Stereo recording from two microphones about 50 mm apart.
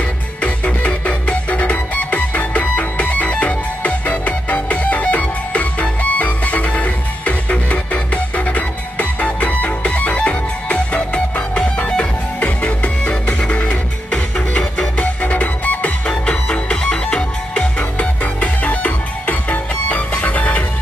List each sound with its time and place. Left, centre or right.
0.4 s music: left
16.1 s music: centre